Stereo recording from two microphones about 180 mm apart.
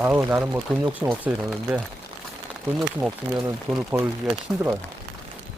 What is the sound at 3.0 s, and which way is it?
Speech, 5° right (ahead or behind).